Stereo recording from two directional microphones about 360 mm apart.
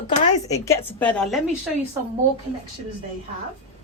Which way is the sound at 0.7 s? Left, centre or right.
Centre.